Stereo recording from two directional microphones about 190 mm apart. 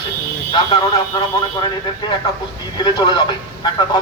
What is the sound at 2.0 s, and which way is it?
Speech, 25° left (ahead or behind).